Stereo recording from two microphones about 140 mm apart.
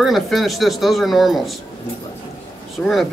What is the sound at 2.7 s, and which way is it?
Speech, centre (ahead or behind).